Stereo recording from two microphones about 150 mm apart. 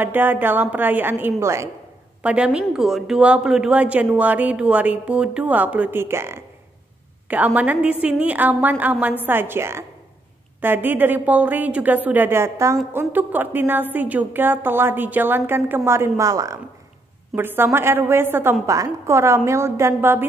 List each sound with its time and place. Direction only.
0.0 s a woman's voice: 15° right (ahead or behind)
2.2 s a woman's voice: 5° right (ahead or behind)